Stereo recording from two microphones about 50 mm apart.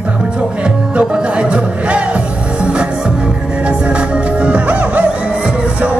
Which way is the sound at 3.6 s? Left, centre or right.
Right.